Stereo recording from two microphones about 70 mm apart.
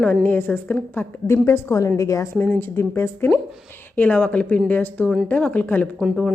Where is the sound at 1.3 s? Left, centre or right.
Left.